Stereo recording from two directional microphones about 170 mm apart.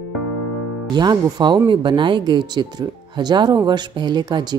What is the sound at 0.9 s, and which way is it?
Speech, 25° right (ahead or behind).